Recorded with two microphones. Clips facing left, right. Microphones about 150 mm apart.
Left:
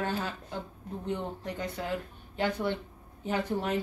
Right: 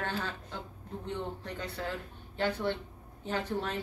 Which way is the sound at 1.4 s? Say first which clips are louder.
Left 3 dB; 15° left (ahead or behind).